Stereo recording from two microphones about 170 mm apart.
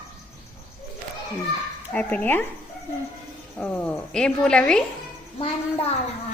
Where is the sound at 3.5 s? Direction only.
5° left (ahead or behind).